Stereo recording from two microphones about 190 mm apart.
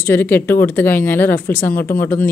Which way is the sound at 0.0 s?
10° left (ahead or behind).